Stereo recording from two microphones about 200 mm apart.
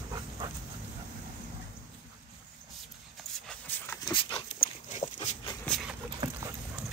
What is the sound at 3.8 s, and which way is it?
Dog, 10° left (ahead or behind).